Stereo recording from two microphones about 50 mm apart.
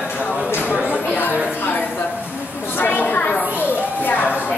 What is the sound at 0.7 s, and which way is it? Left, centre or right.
Chatter, left.